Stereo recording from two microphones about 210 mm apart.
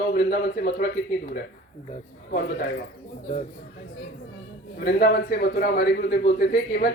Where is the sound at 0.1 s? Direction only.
50° left (ahead or behind).